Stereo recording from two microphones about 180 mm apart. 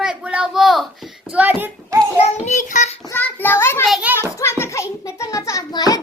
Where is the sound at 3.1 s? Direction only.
10° left (ahead or behind).